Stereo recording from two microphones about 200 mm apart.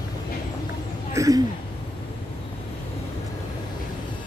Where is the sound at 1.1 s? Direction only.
15° right (ahead or behind).